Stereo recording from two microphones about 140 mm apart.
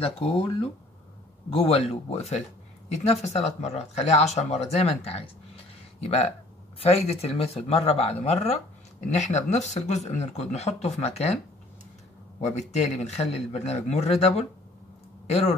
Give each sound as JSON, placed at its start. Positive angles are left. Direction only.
{"t": 0.0, "sound": "speech", "side_deg": 40}
{"t": 12.4, "sound": "speech", "side_deg": 55}